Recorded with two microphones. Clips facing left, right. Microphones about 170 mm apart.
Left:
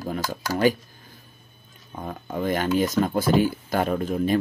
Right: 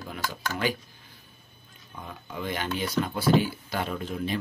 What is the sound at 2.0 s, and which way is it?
Speech, 45° left (ahead or behind).